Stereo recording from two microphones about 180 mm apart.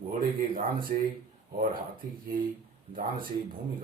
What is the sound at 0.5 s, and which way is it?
Speech, 55° right (ahead or behind).